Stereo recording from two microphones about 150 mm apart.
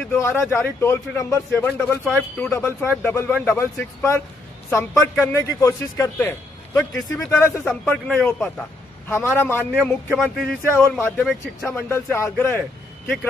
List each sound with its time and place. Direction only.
0.0 s a man's voice: 15° left (ahead or behind)
2.5 s a man's voice: 15° left (ahead or behind)